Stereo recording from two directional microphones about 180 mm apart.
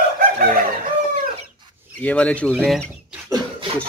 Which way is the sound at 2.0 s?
10° left (ahead or behind).